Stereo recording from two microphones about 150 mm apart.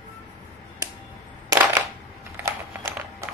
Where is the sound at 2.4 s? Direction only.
20° right (ahead or behind).